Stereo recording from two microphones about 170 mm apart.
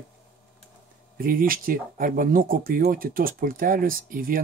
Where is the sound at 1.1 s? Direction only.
55° right (ahead or behind).